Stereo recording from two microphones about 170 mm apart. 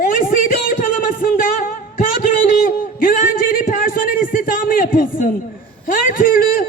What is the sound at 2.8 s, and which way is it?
A man's voice, 55° left (ahead or behind).